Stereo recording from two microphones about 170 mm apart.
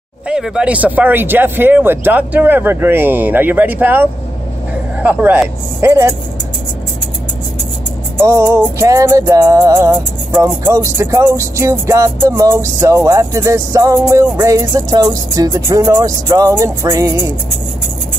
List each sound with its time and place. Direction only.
0.3 s music: 5° right (ahead or behind)
8.2 s music: 20° right (ahead or behind)